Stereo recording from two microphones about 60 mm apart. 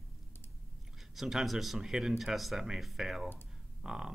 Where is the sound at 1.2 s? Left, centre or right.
Centre.